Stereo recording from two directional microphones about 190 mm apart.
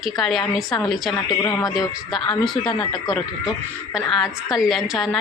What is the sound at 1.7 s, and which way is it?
A woman's voice, centre (ahead or behind).